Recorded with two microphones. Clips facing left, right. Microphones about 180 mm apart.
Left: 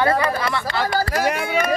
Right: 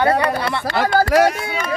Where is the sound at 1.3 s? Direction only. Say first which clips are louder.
Left 2 dB; 65° left (ahead or behind).